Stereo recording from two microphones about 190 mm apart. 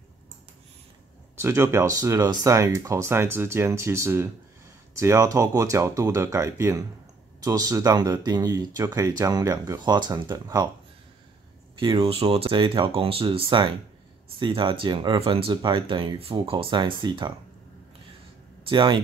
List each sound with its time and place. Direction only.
1.3 s speech: 15° right (ahead or behind)
11.8 s speech: 25° right (ahead or behind)
18.7 s speech: 25° right (ahead or behind)